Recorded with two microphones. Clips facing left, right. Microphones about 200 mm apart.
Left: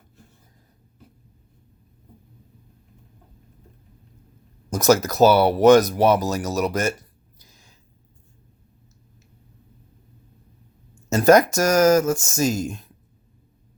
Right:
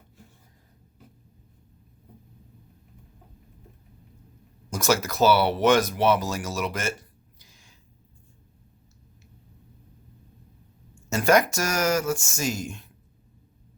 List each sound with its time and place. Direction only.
4.7 s speech: 40° left (ahead or behind)
7.3 s a sound: 40° left (ahead or behind)
11.1 s speech: 40° left (ahead or behind)